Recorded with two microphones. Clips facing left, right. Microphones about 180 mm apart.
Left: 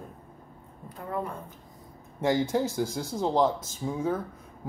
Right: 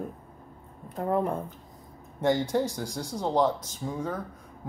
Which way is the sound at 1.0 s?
55° right (ahead or behind).